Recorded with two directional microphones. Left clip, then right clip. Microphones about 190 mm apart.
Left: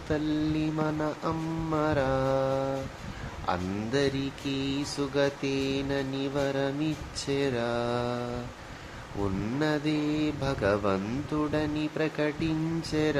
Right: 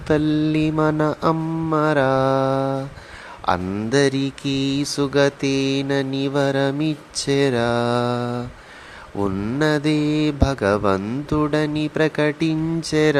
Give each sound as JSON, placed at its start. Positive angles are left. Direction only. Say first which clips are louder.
{"t": 0.1, "sound": "speech", "louder": "right 10 dB", "side_deg": -40}
{"t": 9.6, "sound": "speech", "louder": "right 9 dB", "side_deg": -40}